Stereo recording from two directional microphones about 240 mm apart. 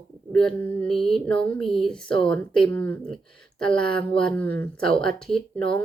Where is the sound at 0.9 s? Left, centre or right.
Left.